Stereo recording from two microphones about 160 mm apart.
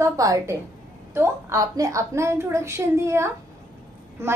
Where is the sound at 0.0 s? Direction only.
20° right (ahead or behind).